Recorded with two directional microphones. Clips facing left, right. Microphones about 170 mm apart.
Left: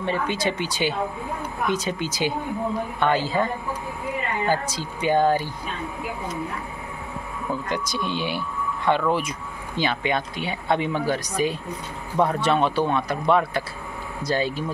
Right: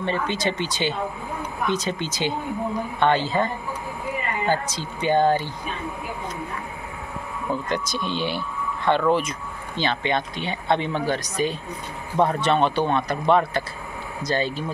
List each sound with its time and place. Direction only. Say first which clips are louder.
0.0 s speech: even; 10° left (ahead or behind)
4.5 s speech: right 2 dB; 10° left (ahead or behind)
7.7 s speech: even; 10° left (ahead or behind)